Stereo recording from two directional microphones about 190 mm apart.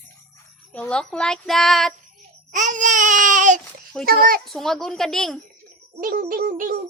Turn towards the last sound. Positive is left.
turn(degrees=-45)  # may be behind; listen again after turning